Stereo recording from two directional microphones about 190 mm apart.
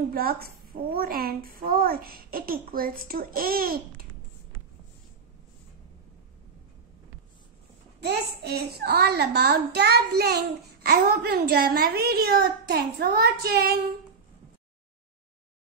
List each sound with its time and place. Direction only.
0.1 s a child's voice: 50° right (ahead or behind)
8.0 s a child's voice: 60° right (ahead or behind)